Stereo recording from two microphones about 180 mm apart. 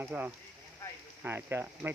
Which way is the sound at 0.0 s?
10° right (ahead or behind).